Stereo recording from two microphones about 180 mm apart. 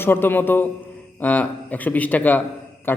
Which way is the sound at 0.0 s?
10° left (ahead or behind).